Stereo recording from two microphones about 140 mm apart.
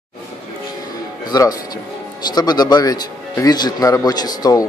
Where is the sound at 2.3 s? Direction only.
30° left (ahead or behind).